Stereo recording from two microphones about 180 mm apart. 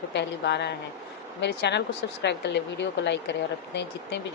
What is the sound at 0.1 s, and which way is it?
Speech, 75° left (ahead or behind).